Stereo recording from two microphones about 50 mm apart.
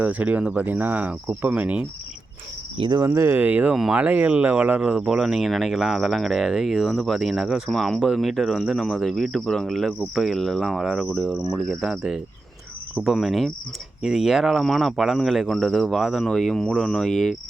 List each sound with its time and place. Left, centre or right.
0.0 s speech: right
3.3 s speech: right
4.8 s speech: centre
7.7 s cricket: centre
7.9 s speech: centre
11.5 s cricket: centre
13.1 s speech: centre
16.2 s cricket: centre